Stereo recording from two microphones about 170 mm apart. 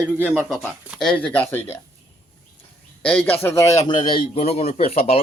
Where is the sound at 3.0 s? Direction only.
10° left (ahead or behind); by 5.1 s 35° left (ahead or behind).